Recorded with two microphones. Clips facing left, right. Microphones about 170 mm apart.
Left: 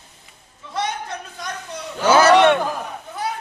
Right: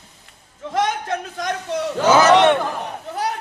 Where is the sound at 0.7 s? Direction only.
90° right.